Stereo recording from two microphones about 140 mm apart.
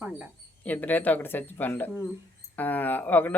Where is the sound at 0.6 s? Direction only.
10° left (ahead or behind).